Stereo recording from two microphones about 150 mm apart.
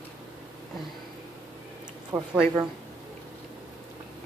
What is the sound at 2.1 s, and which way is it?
Speech, 20° right (ahead or behind).